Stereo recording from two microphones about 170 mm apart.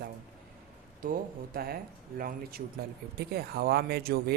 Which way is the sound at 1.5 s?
60° right (ahead or behind).